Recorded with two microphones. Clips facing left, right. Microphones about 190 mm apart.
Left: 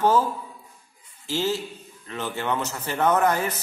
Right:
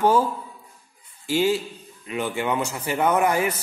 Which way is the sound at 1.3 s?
15° right (ahead or behind).